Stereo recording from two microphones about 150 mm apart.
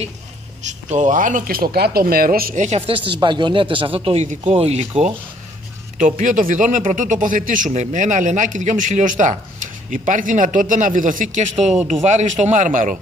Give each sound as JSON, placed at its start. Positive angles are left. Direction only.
{"t": 0.7, "sound": "speech", "side_deg": -55}
{"t": 2.6, "sound": "a man's voice", "side_deg": -40}
{"t": 5.9, "sound": "a man's voice", "side_deg": -55}